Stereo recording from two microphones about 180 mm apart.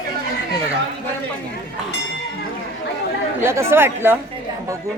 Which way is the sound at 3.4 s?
15° right (ahead or behind).